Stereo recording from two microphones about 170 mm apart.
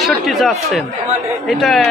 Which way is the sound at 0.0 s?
Centre (ahead or behind).